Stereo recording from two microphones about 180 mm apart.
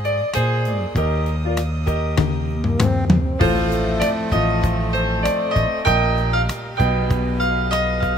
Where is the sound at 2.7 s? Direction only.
5° left (ahead or behind).